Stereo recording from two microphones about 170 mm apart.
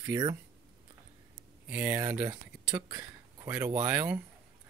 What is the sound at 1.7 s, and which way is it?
Speech, 10° right (ahead or behind).